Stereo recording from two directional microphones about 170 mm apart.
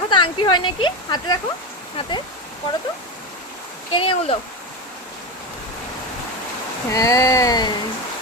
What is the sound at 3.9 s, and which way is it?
Speech, 30° left (ahead or behind).